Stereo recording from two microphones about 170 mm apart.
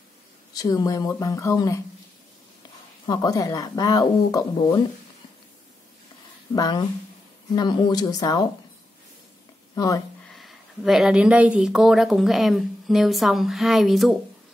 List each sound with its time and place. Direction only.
0.6 s speech: 20° left (ahead or behind)
3.1 s speech: 20° left (ahead or behind)
6.5 s speech: 25° left (ahead or behind)
9.8 s speech: 20° left (ahead or behind)
10.3 s speech: centre (ahead or behind)